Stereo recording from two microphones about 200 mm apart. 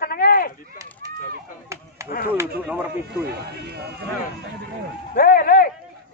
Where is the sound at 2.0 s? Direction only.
50° left (ahead or behind).